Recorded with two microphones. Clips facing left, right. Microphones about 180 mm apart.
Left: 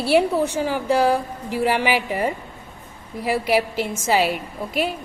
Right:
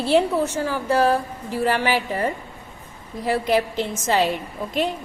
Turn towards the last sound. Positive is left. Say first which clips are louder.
# even
turn(degrees=10)  # may be behind; listen again after turning